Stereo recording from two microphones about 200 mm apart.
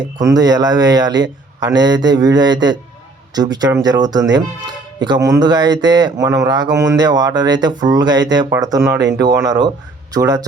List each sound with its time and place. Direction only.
0.0 s speech: 20° right (ahead or behind)